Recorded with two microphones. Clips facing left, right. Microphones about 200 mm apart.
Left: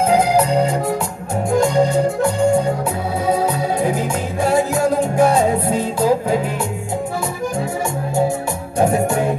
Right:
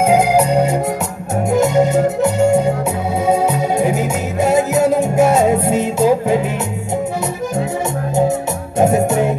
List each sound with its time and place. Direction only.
1.5 s music: 20° right (ahead or behind)
3.9 s music: 20° right (ahead or behind)
8.7 s music: 25° right (ahead or behind)